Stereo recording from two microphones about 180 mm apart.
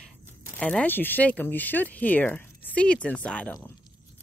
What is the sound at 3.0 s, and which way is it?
Speech, 5° left (ahead or behind).